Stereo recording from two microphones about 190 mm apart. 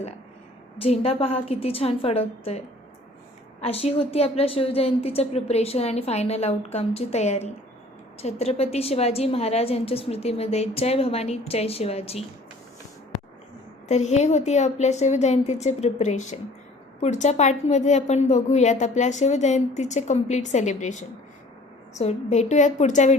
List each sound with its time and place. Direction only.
0.8 s a woman's voice: 30° left (ahead or behind)
13.8 s a woman's voice: 35° left (ahead or behind)